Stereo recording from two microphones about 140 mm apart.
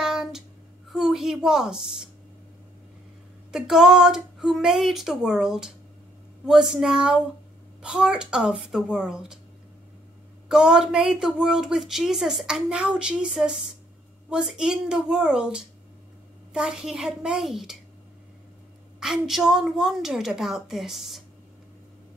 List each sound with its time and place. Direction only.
0.0 s a sound: 5° right (ahead or behind)
0.9 s a woman's voice: centre (ahead or behind)
3.5 s a woman's voice: 5° right (ahead or behind)
10.5 s a woman's voice: 5° right (ahead or behind)
18.9 s a woman's voice: 5° right (ahead or behind)